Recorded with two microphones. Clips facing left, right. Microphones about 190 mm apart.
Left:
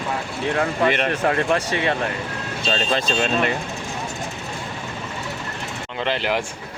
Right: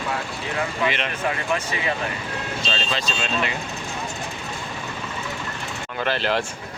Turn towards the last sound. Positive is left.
turn(degrees=15)  # may be behind; listen again after turning